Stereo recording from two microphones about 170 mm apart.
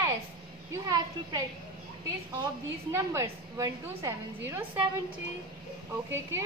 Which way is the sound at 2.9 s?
15° right (ahead or behind).